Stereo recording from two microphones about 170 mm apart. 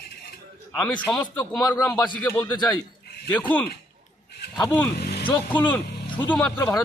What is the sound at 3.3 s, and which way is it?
A man's voice, 10° left (ahead or behind).